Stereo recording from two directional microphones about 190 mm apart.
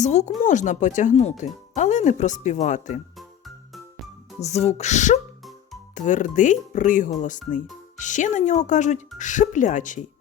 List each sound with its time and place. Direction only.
0.0 s speech: 35° left (ahead or behind)
3.9 s music: centre (ahead or behind)
4.4 s speech: 35° left (ahead or behind)